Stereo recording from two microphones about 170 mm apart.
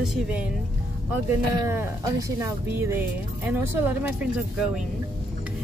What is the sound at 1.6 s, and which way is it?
Speech, 20° right (ahead or behind).